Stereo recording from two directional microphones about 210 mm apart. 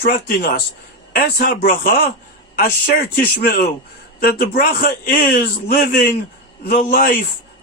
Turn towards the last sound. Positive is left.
turn(degrees=45)  # may be behind; listen again after turning